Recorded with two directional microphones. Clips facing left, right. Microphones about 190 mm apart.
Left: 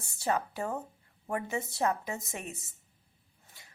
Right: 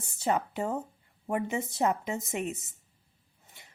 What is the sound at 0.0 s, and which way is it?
Speech, 15° right (ahead or behind).